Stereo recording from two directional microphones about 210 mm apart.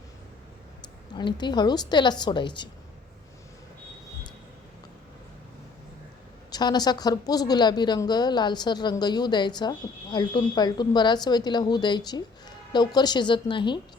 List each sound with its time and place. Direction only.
1.1 s a woman's voice: 20° left (ahead or behind)
6.5 s a woman's voice: 20° left (ahead or behind)